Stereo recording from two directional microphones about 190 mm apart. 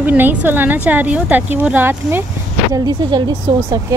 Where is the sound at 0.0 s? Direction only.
10° right (ahead or behind).